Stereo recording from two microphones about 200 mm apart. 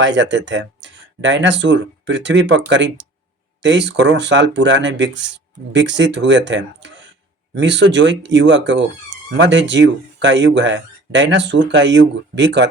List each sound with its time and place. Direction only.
0.0 s speech: 65° right (ahead or behind)